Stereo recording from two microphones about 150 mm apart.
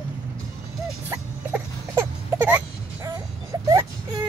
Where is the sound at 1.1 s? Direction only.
15° right (ahead or behind).